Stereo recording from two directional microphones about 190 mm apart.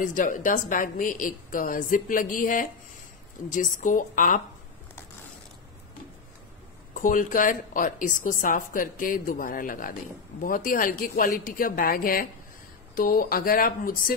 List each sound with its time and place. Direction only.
0.0 s a woman's voice: 45° left (ahead or behind)
6.9 s a woman's voice: 45° left (ahead or behind)